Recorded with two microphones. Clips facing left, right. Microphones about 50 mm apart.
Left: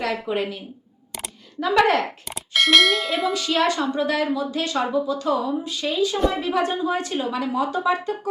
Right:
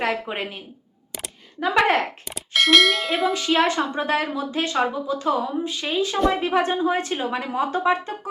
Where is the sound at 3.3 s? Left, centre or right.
Right.